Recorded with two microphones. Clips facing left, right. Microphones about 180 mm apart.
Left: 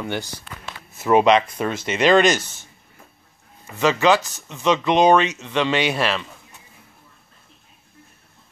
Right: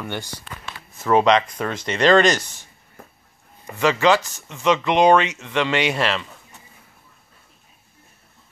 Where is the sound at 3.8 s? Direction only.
20° left (ahead or behind).